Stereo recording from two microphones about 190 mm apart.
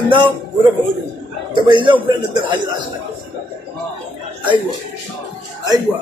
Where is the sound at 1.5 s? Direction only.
25° right (ahead or behind).